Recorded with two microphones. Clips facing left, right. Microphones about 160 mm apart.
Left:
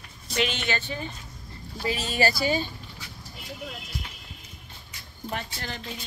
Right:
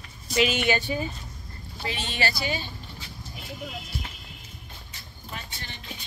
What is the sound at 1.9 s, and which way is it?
Speech, 40° left (ahead or behind).